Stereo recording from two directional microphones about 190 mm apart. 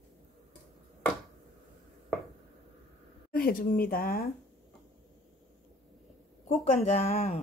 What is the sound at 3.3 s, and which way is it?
Speech, 50° left (ahead or behind).